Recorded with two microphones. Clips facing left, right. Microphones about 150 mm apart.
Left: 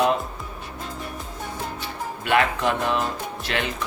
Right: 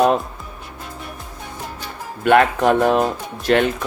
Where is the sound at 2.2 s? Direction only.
50° right (ahead or behind).